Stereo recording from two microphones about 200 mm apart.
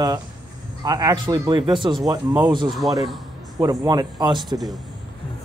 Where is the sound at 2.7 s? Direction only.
Centre (ahead or behind).